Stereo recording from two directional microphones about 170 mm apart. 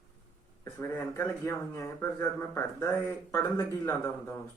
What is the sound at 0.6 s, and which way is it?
A man's voice, 15° left (ahead or behind).